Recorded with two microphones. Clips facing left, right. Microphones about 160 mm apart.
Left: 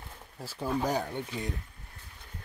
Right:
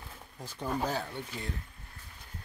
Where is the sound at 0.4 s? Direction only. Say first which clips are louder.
Left 2 dB; 5° left (ahead or behind).